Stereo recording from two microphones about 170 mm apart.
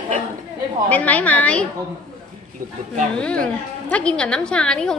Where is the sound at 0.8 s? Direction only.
10° left (ahead or behind).